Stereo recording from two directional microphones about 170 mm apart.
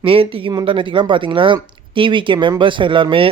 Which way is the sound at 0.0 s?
35° right (ahead or behind).